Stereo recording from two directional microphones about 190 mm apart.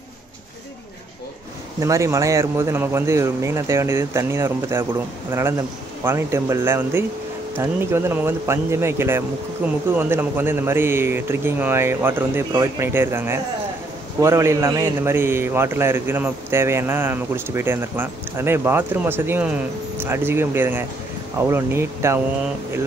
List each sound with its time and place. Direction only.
1.8 s a man's voice: 15° right (ahead or behind)